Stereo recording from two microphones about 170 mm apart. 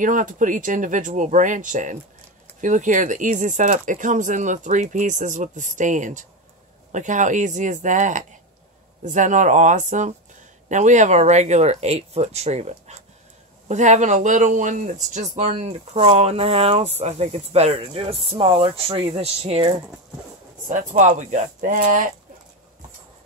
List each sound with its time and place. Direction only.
0.0 s speech: 50° right (ahead or behind); by 19.7 s 35° right (ahead or behind)
20.6 s speech: 45° right (ahead or behind)